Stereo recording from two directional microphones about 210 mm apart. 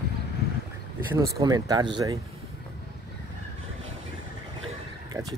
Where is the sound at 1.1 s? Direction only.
15° right (ahead or behind).